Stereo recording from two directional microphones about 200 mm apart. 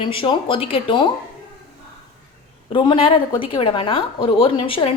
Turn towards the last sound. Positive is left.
turn(degrees=25)  # may be behind; listen again after turning